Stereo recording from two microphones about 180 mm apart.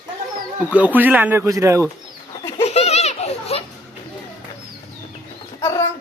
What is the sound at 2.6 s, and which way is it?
Baby laughter, 35° left (ahead or behind).